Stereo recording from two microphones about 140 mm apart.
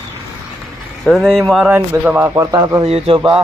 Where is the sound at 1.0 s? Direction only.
Centre (ahead or behind).